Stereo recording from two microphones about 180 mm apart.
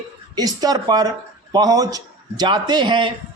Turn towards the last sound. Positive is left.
turn(degrees=-25)  # may be behind; listen again after turning